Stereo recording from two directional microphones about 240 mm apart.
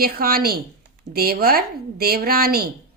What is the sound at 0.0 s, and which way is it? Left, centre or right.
A woman's voice, right.